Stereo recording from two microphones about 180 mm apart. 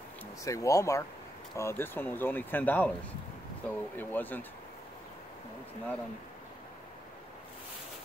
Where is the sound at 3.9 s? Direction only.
10° left (ahead or behind).